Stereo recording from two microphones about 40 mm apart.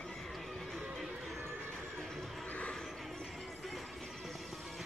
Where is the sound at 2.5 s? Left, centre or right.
Left.